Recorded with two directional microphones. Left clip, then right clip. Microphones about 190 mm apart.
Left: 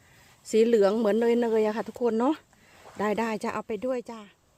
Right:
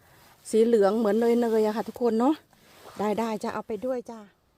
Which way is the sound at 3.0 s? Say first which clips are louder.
Even; 15° right (ahead or behind).